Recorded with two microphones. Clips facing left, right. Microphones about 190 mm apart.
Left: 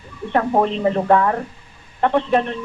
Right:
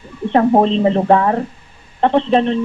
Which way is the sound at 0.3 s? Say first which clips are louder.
Right 5 dB; 30° right (ahead or behind).